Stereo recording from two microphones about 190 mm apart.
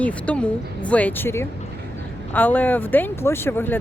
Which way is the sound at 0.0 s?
5° left (ahead or behind).